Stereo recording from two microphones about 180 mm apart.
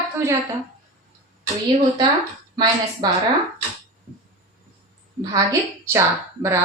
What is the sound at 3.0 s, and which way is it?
Speech, 20° right (ahead or behind).